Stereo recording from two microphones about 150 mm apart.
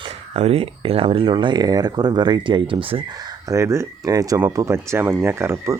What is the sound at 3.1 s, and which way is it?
Speech, 25° right (ahead or behind).